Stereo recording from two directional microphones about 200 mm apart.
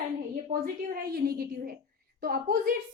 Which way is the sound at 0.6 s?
50° right (ahead or behind).